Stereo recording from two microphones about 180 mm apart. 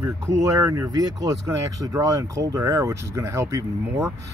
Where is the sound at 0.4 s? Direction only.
15° right (ahead or behind).